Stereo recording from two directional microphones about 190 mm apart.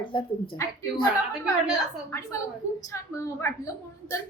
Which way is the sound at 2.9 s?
15° left (ahead or behind).